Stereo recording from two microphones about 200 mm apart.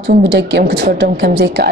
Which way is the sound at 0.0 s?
60° right (ahead or behind).